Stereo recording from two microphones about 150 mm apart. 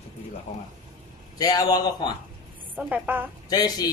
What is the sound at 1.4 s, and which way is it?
Speech, 25° left (ahead or behind).